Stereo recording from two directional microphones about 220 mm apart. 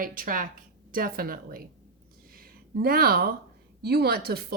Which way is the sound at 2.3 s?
40° right (ahead or behind).